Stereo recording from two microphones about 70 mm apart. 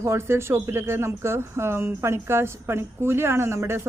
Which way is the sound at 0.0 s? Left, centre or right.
Right.